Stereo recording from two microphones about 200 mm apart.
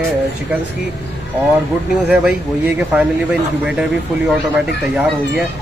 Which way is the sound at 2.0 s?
5° right (ahead or behind).